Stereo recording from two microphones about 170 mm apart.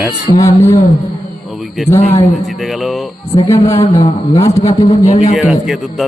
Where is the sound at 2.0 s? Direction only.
45° left (ahead or behind).